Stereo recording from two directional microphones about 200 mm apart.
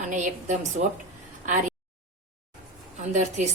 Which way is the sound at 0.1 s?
35° right (ahead or behind).